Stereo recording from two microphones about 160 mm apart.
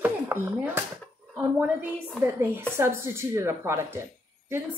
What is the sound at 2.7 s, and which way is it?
Speech, 15° right (ahead or behind).